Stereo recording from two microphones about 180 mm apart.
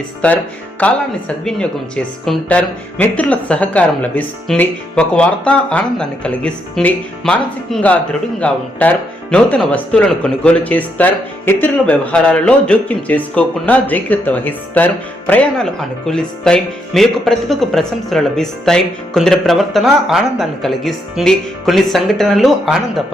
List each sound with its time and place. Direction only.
0.2 s speech: 5° left (ahead or behind)